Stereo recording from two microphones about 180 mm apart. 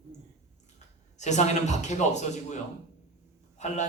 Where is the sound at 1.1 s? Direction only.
40° left (ahead or behind).